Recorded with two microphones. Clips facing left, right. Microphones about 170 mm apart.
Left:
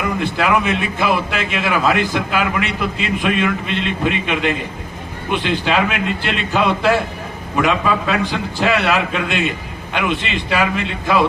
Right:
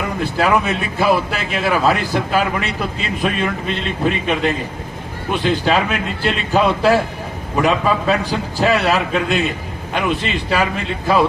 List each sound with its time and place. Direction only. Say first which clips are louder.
0.2 s a man's voice: right 3 dB; 35° right (ahead or behind)